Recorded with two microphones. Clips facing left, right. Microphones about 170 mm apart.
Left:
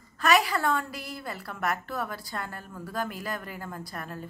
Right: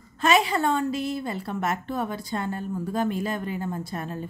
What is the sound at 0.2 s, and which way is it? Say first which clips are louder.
A woman's voice: right 3 dB; 20° right (ahead or behind).